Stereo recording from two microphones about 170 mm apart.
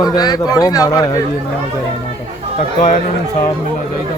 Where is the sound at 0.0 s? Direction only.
25° left (ahead or behind).